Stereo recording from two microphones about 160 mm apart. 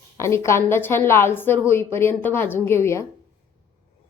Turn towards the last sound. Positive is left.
turn(degrees=15)  # may be behind; listen again after turning